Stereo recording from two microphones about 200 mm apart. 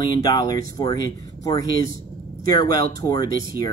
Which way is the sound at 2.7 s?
20° left (ahead or behind).